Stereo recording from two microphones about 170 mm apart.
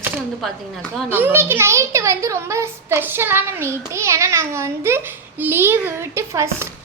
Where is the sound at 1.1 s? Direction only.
10° right (ahead or behind).